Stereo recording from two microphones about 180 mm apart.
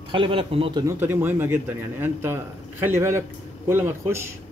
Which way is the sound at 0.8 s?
10° right (ahead or behind).